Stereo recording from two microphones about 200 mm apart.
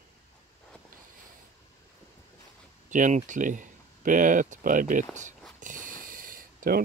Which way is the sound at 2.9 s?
40° right (ahead or behind).